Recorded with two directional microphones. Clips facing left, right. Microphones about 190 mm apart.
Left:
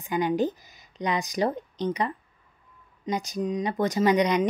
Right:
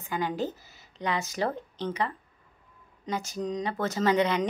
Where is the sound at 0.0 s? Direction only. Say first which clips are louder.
Left 6 dB; 15° left (ahead or behind).